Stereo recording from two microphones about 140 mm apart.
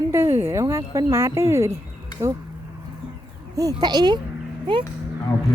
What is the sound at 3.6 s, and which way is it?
Speech, 25° right (ahead or behind).